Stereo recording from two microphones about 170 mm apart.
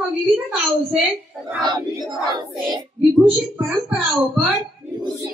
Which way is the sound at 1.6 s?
25° right (ahead or behind).